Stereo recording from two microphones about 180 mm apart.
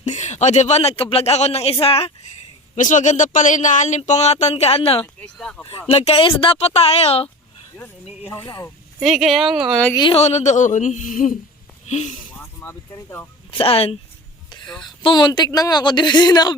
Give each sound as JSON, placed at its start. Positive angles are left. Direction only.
{"t": 0.0, "sound": "speech", "side_deg": 40}
{"t": 2.7, "sound": "speech", "side_deg": 45}
{"t": 5.2, "sound": "speech", "side_deg": 5}
{"t": 5.9, "sound": "speech", "side_deg": 35}
{"t": 8.3, "sound": "speech", "side_deg": 15}
{"t": 9.0, "sound": "speech", "side_deg": 0}
{"t": 9.9, "sound": "speech", "side_deg": 25}
{"t": 10.2, "sound": "speech", "side_deg": 40}
{"t": 12.5, "sound": "speech", "side_deg": 15}
{"t": 13.5, "sound": "speech", "side_deg": 30}